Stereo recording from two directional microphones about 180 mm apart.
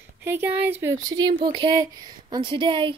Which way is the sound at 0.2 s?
10° right (ahead or behind).